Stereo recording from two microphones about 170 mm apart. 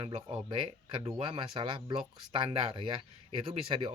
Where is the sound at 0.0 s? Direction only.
30° right (ahead or behind).